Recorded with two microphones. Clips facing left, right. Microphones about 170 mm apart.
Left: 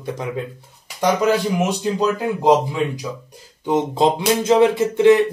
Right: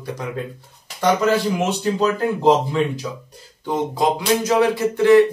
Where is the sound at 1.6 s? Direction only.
15° left (ahead or behind).